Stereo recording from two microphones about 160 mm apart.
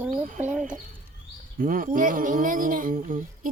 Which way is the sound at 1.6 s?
60° right (ahead or behind).